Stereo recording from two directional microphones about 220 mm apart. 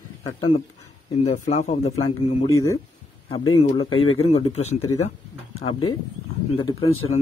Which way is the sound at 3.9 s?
70° left (ahead or behind).